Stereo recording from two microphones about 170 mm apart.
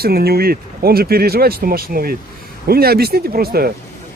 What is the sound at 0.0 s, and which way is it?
Speech, 65° right (ahead or behind).